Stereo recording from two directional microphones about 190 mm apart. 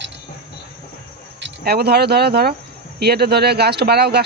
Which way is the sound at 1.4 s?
55° right (ahead or behind).